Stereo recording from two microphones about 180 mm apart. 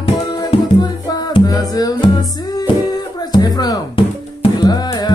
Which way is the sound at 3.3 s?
20° left (ahead or behind).